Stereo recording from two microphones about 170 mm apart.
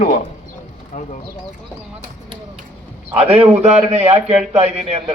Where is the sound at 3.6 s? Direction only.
40° right (ahead or behind).